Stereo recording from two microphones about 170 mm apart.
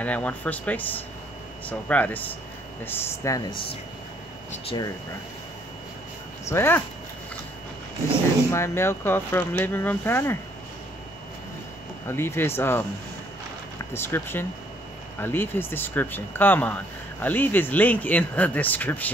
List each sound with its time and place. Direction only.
0.0 s speech: 10° left (ahead or behind)
4.6 s speech: 25° left (ahead or behind)
6.4 s speech: 15° left (ahead or behind)
8.5 s speech: 15° left (ahead or behind)
12.1 s speech: 15° left (ahead or behind)
13.9 s speech: 15° left (ahead or behind)